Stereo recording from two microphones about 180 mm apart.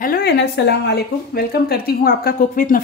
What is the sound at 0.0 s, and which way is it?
Speech, 60° left (ahead or behind).